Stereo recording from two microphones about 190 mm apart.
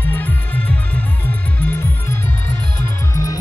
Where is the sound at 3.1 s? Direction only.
20° left (ahead or behind).